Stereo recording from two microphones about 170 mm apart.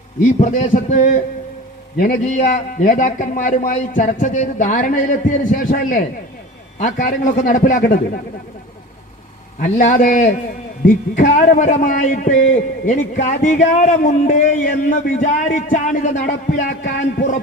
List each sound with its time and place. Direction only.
0.3 s a man's voice: 45° left (ahead or behind)
9.6 s a man's voice: 50° left (ahead or behind)